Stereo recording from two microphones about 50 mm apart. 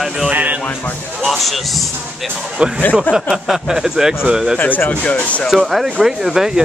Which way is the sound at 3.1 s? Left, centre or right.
Centre.